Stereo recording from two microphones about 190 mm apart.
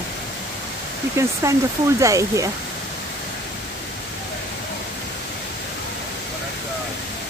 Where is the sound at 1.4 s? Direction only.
15° right (ahead or behind).